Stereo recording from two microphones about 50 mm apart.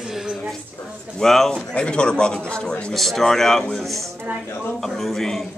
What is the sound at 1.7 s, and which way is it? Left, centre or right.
A man's voice, left.